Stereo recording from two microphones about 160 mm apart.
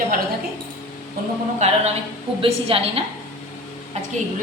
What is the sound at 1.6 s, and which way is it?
A woman's voice, 40° right (ahead or behind).